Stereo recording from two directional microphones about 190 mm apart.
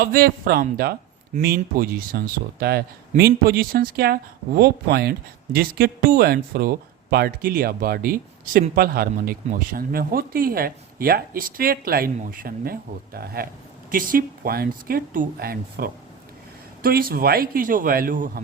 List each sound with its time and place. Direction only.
0.0 s a man's voice: 50° right (ahead or behind)